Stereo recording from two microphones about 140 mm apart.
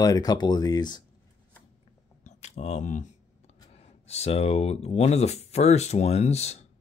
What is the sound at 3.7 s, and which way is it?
Speech, 45° left (ahead or behind).